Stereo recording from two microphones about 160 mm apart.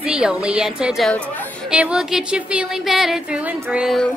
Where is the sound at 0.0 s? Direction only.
5° right (ahead or behind).